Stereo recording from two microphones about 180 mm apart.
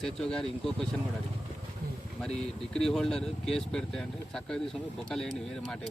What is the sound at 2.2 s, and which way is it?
Speech, 5° left (ahead or behind).